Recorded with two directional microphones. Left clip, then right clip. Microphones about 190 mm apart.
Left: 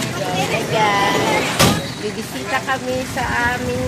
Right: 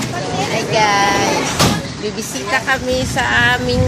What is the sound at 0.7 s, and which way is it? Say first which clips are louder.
Vehicle: right 3 dB; 10° right (ahead or behind).